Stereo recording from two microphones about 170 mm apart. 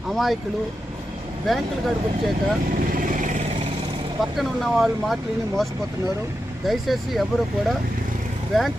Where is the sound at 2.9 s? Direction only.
50° right (ahead or behind).